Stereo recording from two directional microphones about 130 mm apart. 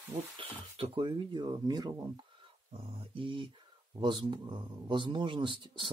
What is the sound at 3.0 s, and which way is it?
A man's voice, 40° right (ahead or behind).